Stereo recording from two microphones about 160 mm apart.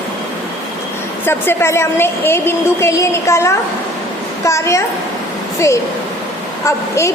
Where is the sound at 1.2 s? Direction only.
15° left (ahead or behind).